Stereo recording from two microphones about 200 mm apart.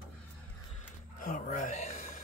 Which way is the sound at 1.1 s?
40° left (ahead or behind).